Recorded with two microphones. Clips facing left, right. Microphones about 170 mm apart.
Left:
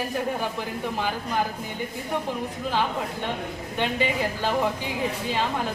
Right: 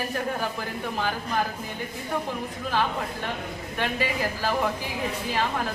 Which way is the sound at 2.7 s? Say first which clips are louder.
Even; 15° left (ahead or behind).